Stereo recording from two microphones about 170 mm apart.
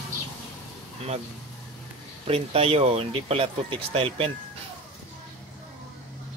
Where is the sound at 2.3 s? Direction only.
35° right (ahead or behind).